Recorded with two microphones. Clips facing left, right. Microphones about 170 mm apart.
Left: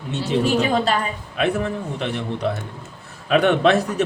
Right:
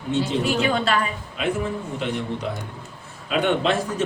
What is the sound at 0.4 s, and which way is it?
Speech, 40° left (ahead or behind).